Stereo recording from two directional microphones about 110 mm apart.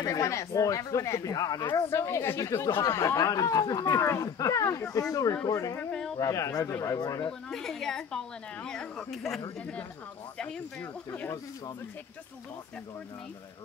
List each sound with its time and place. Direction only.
0.0 s speech: 30° left (ahead or behind)
1.9 s speech: 25° left (ahead or behind)
5.8 s speech: 10° left (ahead or behind)
6.1 s speech: 30° left (ahead or behind)
7.2 s speech: 5° left (ahead or behind)